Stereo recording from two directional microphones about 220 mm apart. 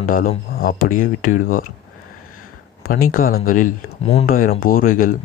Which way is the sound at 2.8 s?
40° left (ahead or behind).